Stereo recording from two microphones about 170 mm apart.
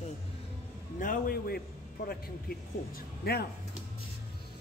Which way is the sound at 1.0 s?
55° left (ahead or behind).